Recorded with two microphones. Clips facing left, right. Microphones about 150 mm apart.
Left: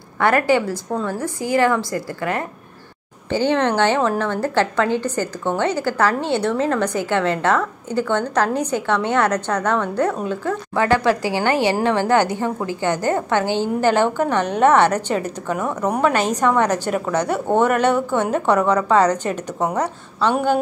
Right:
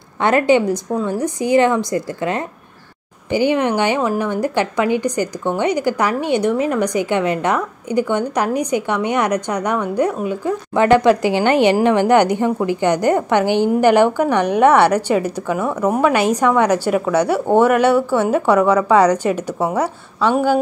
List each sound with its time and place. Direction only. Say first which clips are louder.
0.2 s a woman's voice: right 3 dB; 20° right (ahead or behind)